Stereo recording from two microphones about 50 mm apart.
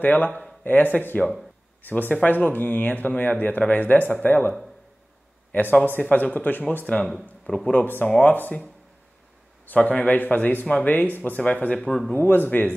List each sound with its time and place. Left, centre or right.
0.0 s speech: left
7.7 s speech: left
9.8 s speech: left
12.2 s speech: left